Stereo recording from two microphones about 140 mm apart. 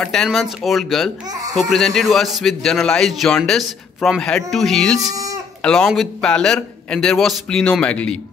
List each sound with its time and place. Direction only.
0.0 s a man's voice: 5° left (ahead or behind)
5.0 s speech: 25° right (ahead or behind)
5.6 s a man's voice: 5° left (ahead or behind)